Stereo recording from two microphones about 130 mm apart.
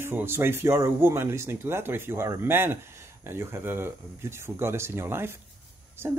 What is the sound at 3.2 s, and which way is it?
Speech, 20° right (ahead or behind).